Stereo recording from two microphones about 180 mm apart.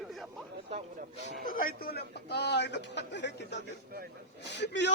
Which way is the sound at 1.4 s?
50° left (ahead or behind).